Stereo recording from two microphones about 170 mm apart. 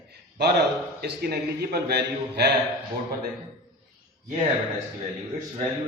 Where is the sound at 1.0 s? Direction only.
65° right (ahead or behind).